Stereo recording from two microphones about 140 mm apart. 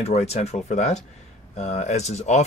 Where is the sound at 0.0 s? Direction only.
50° left (ahead or behind).